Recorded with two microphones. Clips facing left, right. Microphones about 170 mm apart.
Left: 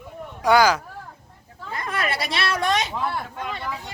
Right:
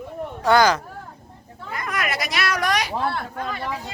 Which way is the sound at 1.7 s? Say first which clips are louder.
Even; 30° left (ahead or behind).